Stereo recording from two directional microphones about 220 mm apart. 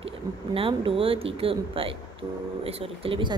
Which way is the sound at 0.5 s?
25° right (ahead or behind).